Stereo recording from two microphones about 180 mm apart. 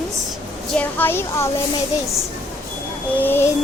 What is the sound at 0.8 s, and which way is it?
Speech, 10° left (ahead or behind).